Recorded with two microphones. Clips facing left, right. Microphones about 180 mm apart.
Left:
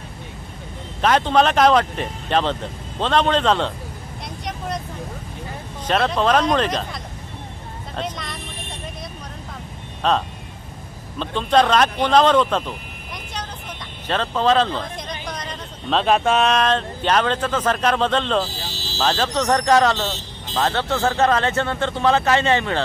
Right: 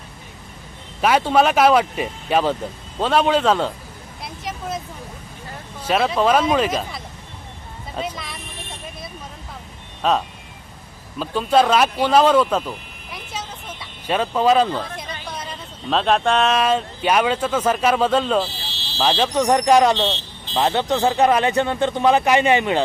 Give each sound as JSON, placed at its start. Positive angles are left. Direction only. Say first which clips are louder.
{"t": 1.0, "sound": "speech", "louder": "right 1 dB", "side_deg": -10}
{"t": 4.5, "sound": "vehicle", "louder": "even", "side_deg": -5}
{"t": 5.9, "sound": "speech", "louder": "right 1 dB", "side_deg": -5}
{"t": 10.0, "sound": "speech", "louder": "even", "side_deg": -5}
{"t": 18.5, "sound": "buzzer", "louder": "left 4 dB", "side_deg": 45}
{"t": 18.9, "sound": "speech", "louder": "right 2 dB", "side_deg": -10}